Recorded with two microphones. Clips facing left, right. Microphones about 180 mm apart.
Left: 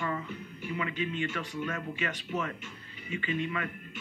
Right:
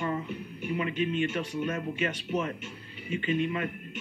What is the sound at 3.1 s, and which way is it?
Speech, 55° right (ahead or behind).